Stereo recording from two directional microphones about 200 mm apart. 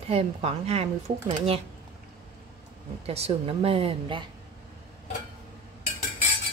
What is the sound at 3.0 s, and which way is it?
A woman's voice, 30° right (ahead or behind).